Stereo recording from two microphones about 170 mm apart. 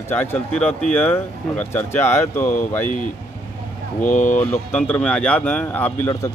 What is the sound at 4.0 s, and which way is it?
Speech, 50° left (ahead or behind).